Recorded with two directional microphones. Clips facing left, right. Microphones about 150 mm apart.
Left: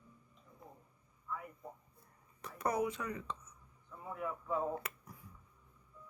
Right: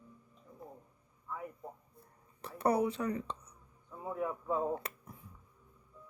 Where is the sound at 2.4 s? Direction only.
30° right (ahead or behind).